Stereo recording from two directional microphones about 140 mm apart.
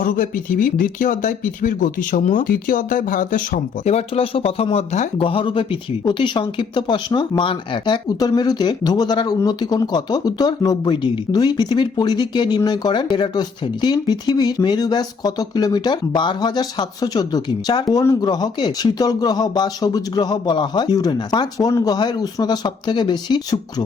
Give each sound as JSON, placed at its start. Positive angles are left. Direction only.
{"t": 0.0, "sound": "speech", "side_deg": 80}
{"t": 3.8, "sound": "speech", "side_deg": 45}
{"t": 5.1, "sound": "speech", "side_deg": 40}